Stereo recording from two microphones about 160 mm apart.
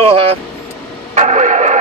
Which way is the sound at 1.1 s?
45° right (ahead or behind).